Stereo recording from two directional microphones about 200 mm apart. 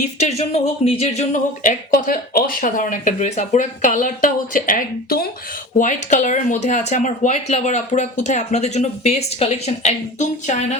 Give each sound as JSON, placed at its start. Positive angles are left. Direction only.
{"t": 0.2, "sound": "speech", "side_deg": 35}